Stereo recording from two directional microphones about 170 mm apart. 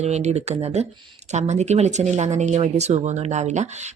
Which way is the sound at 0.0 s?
40° right (ahead or behind).